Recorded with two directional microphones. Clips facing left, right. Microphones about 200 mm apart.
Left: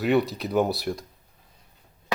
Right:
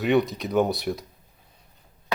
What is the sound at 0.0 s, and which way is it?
Speech, centre (ahead or behind).